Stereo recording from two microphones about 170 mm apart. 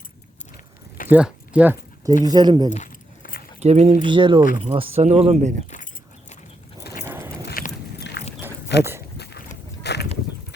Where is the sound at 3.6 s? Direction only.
40° right (ahead or behind).